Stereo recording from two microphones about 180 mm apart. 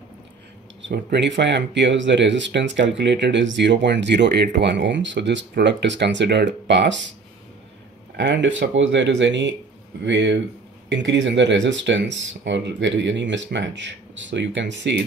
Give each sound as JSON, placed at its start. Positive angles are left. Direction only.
{"t": 0.8, "sound": "speech", "side_deg": -75}
{"t": 8.2, "sound": "speech", "side_deg": -80}